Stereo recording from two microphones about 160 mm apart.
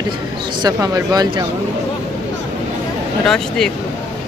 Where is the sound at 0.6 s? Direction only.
25° right (ahead or behind).